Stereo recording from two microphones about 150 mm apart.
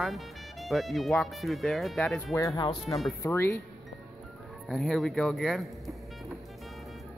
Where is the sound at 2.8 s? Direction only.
Centre (ahead or behind).